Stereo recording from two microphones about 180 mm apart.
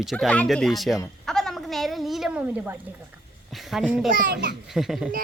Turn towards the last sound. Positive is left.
turn(degrees=0)  # may be behind; listen again after turning